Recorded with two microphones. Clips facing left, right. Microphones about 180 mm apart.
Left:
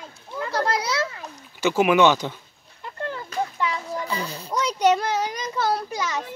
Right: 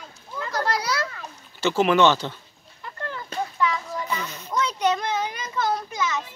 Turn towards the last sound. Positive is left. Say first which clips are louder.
# even
turn(degrees=35)  # may be behind; listen again after turning